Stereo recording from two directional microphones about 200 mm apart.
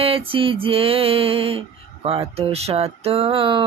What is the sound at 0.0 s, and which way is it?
Mantra, 30° right (ahead or behind).